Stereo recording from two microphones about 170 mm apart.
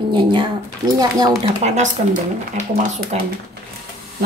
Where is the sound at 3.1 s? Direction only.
40° right (ahead or behind).